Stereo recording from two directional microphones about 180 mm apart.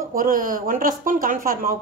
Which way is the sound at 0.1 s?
50° right (ahead or behind).